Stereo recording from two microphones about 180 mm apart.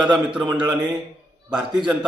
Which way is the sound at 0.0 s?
25° right (ahead or behind).